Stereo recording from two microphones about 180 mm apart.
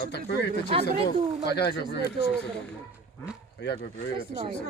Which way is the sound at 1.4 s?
70° left (ahead or behind).